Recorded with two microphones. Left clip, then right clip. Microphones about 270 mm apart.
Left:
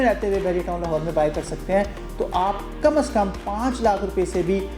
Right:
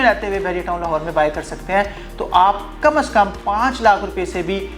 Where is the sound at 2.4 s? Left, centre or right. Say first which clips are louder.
Right 7 dB; right.